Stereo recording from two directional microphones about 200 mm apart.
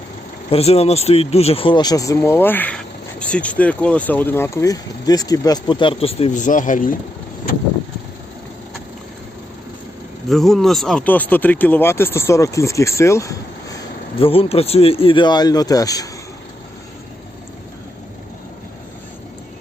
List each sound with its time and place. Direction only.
0.5 s speech: 30° left (ahead or behind)
10.2 s speech: centre (ahead or behind)
14.2 s speech: 30° left (ahead or behind)